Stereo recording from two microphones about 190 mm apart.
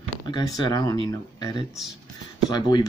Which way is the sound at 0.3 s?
20° left (ahead or behind).